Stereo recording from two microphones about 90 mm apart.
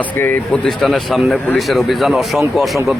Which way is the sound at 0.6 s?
5° left (ahead or behind).